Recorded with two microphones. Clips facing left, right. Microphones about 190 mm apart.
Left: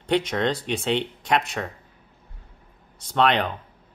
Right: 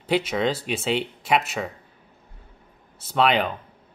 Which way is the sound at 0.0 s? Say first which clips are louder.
Even; 5° right (ahead or behind).